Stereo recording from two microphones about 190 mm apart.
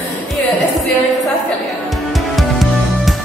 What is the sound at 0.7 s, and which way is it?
Music, centre (ahead or behind).